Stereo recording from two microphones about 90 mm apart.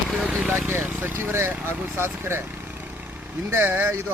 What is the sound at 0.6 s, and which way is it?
Speech, 25° right (ahead or behind).